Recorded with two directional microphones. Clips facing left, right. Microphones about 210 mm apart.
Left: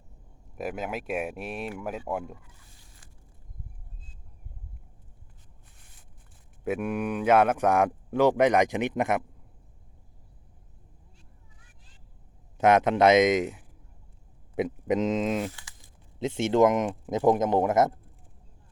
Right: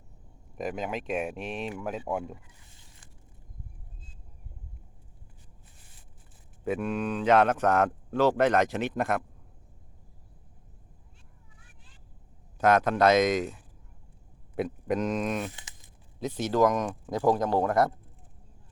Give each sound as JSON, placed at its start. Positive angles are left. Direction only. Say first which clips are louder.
{"t": 0.5, "sound": "speech", "louder": "even", "side_deg": 5}
{"t": 6.7, "sound": "speech", "louder": "left 1 dB", "side_deg": 10}
{"t": 12.5, "sound": "speech", "louder": "left 2 dB", "side_deg": 20}
{"t": 15.5, "sound": "crumpling", "louder": "right 1 dB", "side_deg": -20}
{"t": 16.1, "sound": "speech", "louder": "left 3 dB", "side_deg": 25}